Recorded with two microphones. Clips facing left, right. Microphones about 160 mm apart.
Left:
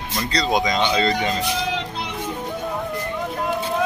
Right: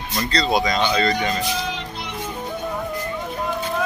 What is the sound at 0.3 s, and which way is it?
Speech, 15° left (ahead or behind).